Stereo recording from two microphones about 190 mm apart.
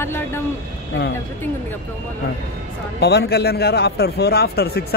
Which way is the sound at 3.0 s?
60° left (ahead or behind).